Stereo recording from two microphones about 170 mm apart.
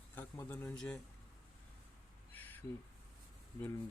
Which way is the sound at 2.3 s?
10° left (ahead or behind).